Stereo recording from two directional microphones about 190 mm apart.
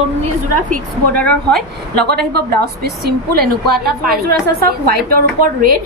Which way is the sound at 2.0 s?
55° right (ahead or behind).